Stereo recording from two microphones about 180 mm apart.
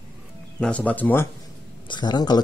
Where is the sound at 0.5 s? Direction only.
5° left (ahead or behind).